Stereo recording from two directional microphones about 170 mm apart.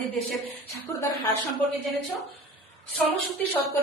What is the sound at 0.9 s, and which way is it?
Speech, 15° left (ahead or behind).